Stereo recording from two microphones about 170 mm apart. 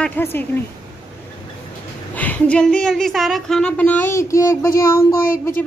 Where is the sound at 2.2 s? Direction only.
10° left (ahead or behind).